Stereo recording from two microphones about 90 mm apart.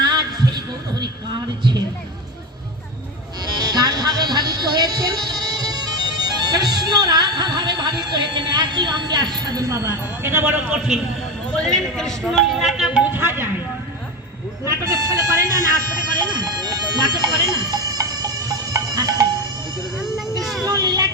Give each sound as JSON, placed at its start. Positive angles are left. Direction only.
{"t": 0.0, "sound": "heart sounds", "side_deg": -50}
{"t": 1.0, "sound": "music", "side_deg": -55}
{"t": 3.6, "sound": "music", "side_deg": -50}
{"t": 11.5, "sound": "speech", "side_deg": 5}
{"t": 13.1, "sound": "speech", "side_deg": -25}
{"t": 14.6, "sound": "speech", "side_deg": -40}
{"t": 16.1, "sound": "bagpipes", "side_deg": -55}
{"t": 20.0, "sound": "a sound", "side_deg": -5}
{"t": 20.7, "sound": "a sound", "side_deg": -50}